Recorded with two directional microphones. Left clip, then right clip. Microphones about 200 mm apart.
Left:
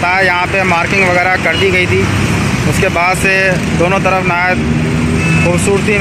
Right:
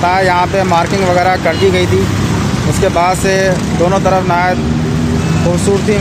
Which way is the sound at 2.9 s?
10° right (ahead or behind).